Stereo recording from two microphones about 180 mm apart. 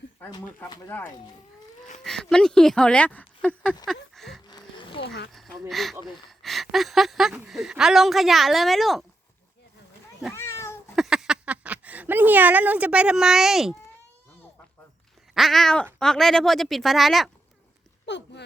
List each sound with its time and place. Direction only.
0.3 s speech: 15° left (ahead or behind)
3.8 s a sound: centre (ahead or behind)
4.4 s a sound: 25° left (ahead or behind)
5.0 s speech: 70° left (ahead or behind)
5.3 s speech: centre (ahead or behind)
10.3 s speech: 15° left (ahead or behind)
10.9 s speech: centre (ahead or behind)
15.4 s speech: centre (ahead or behind)
18.0 s speech: 75° left (ahead or behind)